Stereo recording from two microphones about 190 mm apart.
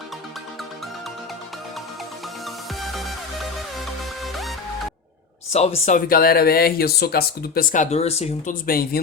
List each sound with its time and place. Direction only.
2.8 s music: centre (ahead or behind)
5.5 s speech: 35° left (ahead or behind)
6.1 s speech: 50° left (ahead or behind); by 8.5 s 35° left (ahead or behind)
8.6 s speech: 50° left (ahead or behind)